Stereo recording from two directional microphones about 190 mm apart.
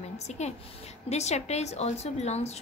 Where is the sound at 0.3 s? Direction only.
35° left (ahead or behind).